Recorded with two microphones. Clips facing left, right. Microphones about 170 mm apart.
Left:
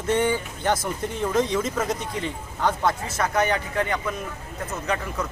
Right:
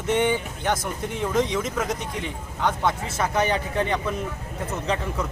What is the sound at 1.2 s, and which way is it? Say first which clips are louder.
Speech: left 1 dB; 15° right (ahead or behind).